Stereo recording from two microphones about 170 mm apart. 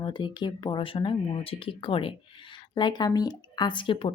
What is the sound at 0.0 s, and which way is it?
Speech, 25° left (ahead or behind).